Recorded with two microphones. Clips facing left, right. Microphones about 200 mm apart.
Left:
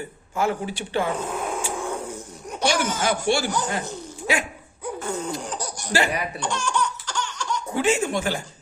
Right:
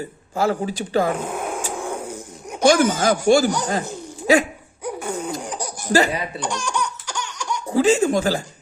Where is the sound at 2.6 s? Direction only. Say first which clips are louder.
Right 8 dB; 50° right (ahead or behind).